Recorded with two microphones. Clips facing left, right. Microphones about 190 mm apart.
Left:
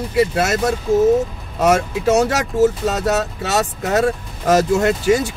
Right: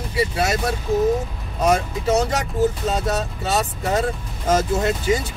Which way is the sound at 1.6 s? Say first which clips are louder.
Left 3 dB; 75° left (ahead or behind).